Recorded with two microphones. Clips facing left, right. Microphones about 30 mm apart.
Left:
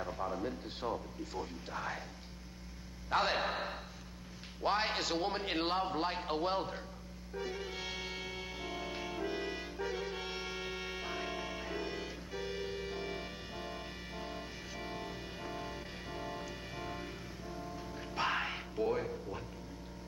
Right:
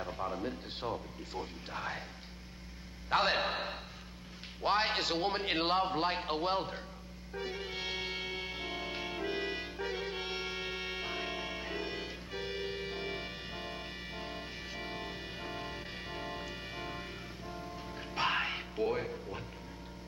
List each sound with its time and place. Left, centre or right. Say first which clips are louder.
0.0 s a man's voice: right 1 dB; centre
3.1 s a man's voice: right 2 dB; centre
7.3 s music: right 1 dB; right